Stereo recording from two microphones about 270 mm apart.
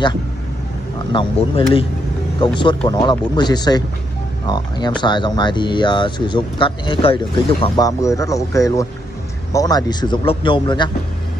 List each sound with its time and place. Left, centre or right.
1.1 s speech: centre